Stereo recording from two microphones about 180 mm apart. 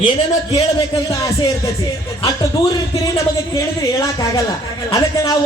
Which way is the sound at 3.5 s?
20° left (ahead or behind).